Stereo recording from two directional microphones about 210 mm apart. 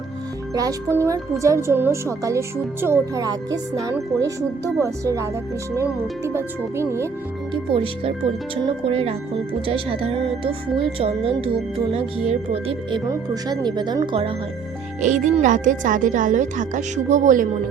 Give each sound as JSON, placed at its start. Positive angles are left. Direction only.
{"t": 0.5, "sound": "speech", "side_deg": -15}
{"t": 7.5, "sound": "speech", "side_deg": -25}
{"t": 15.0, "sound": "speech", "side_deg": -35}